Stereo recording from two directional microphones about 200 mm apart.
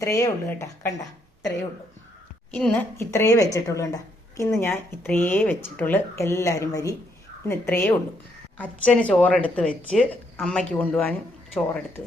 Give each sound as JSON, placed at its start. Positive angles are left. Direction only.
{"t": 0.0, "sound": "speech", "side_deg": 15}
{"t": 2.6, "sound": "a woman's voice", "side_deg": 5}